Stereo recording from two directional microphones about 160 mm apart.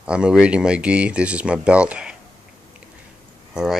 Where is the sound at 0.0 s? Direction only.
5° right (ahead or behind).